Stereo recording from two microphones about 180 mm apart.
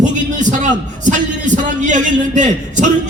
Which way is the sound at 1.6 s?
45° right (ahead or behind).